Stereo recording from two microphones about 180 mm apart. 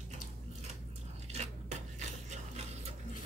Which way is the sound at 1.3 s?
40° right (ahead or behind).